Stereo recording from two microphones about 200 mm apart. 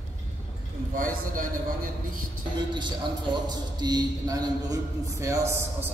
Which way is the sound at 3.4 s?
20° right (ahead or behind).